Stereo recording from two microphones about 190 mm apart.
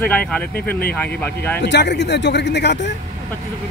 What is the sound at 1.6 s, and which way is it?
Speech, 65° left (ahead or behind).